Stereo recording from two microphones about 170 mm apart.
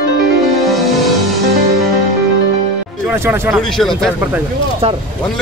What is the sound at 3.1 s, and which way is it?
Speech, 15° right (ahead or behind).